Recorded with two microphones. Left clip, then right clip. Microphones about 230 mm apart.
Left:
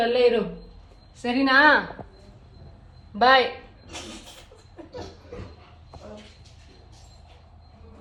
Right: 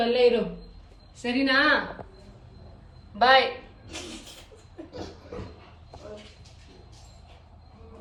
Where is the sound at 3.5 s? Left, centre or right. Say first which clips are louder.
Even; centre.